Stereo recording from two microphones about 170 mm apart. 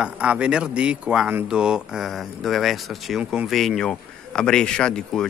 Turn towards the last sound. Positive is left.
turn(degrees=5)  # may be behind; listen again after turning